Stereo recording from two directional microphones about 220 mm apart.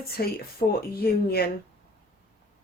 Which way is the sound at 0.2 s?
40° left (ahead or behind).